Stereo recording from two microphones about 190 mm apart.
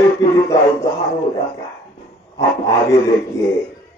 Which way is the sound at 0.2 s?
20° left (ahead or behind).